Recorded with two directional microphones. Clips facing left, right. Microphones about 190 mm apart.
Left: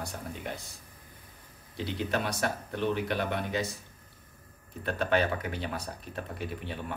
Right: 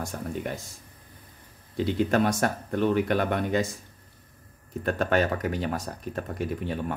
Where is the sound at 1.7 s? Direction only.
50° right (ahead or behind).